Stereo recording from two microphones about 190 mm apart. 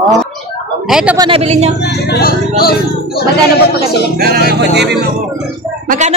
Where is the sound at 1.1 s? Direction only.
25° right (ahead or behind).